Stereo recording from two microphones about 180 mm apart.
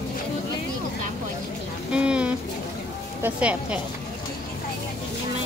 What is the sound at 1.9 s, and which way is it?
Speech, 5° right (ahead or behind).